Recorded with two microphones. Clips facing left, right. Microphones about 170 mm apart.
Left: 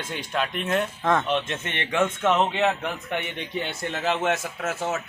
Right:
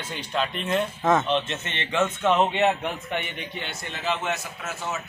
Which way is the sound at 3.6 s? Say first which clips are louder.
Left 2 dB; 55° left (ahead or behind).